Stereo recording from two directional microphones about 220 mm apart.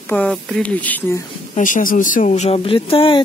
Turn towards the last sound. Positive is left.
turn(degrees=25)  # may be behind; listen again after turning